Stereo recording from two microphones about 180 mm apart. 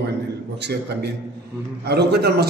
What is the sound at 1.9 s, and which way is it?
Speech, 65° right (ahead or behind).